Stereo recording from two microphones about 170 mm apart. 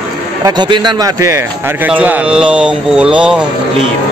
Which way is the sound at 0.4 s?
25° right (ahead or behind).